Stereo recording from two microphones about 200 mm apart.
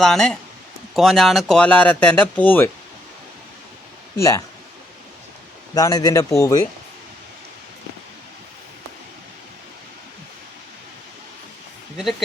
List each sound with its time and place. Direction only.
0.0 s speech: centre (ahead or behind)
4.2 s speech: 15° left (ahead or behind)
5.7 s speech: 20° left (ahead or behind)